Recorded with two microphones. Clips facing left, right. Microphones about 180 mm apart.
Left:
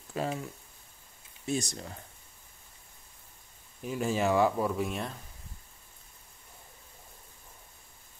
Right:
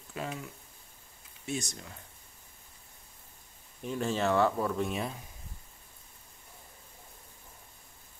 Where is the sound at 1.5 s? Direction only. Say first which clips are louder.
Left 4 dB; 35° left (ahead or behind).